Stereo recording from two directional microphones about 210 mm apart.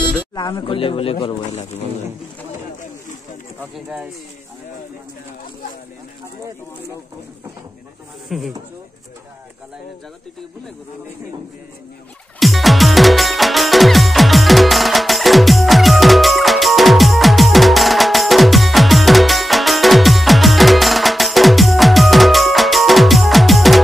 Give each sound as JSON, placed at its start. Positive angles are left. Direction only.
{"t": 0.3, "sound": "speech", "side_deg": 20}
{"t": 3.7, "sound": "speech", "side_deg": -5}
{"t": 8.3, "sound": "speech", "side_deg": 0}
{"t": 12.4, "sound": "music", "side_deg": 0}